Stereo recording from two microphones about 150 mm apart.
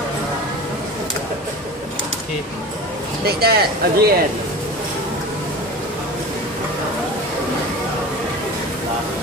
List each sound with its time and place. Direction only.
3.3 s speech: 90° right